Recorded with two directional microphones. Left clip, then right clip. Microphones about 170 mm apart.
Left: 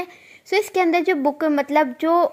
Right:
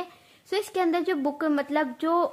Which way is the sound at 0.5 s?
25° left (ahead or behind).